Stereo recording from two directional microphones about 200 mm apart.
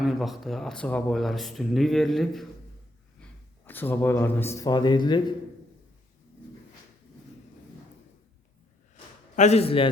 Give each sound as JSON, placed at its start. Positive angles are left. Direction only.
{"t": 0.0, "sound": "speech", "side_deg": 0}
{"t": 3.7, "sound": "speech", "side_deg": 10}
{"t": 9.3, "sound": "a man's voice", "side_deg": 35}